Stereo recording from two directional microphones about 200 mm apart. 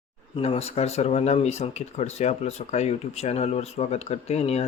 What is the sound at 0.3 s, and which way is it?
Speech, 30° left (ahead or behind).